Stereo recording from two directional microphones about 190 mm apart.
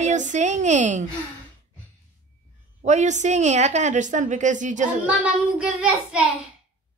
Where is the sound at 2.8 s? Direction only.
40° right (ahead or behind).